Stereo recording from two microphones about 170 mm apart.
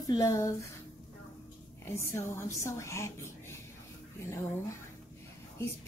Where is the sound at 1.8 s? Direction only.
15° left (ahead or behind).